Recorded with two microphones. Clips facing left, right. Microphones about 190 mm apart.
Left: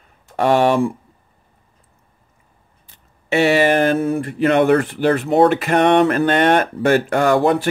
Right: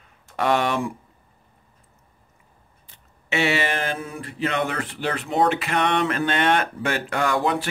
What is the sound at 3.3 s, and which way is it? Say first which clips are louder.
Speech: left 9 dB; 45° left (ahead or behind).